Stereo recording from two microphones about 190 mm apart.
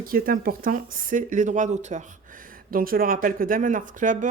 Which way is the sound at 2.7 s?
50° right (ahead or behind).